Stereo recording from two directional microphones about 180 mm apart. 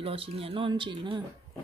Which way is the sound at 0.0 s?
30° right (ahead or behind).